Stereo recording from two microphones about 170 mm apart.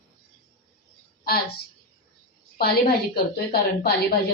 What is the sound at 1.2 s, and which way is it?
Speech, 65° left (ahead or behind).